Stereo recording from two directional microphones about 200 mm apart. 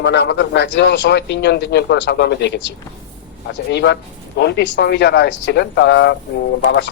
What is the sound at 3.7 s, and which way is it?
A man's voice, 60° left (ahead or behind).